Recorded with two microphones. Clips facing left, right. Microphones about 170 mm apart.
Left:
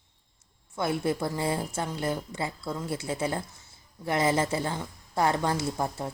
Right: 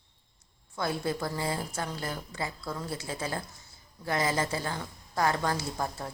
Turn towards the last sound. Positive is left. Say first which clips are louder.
# left 4 dB
turn(degrees=25)  # may be behind; listen again after turning